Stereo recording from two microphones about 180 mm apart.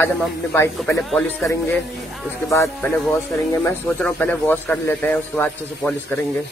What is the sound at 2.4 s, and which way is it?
Speech, 15° left (ahead or behind).